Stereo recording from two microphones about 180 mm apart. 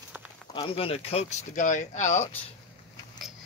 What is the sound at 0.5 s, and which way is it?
Speech, 30° left (ahead or behind).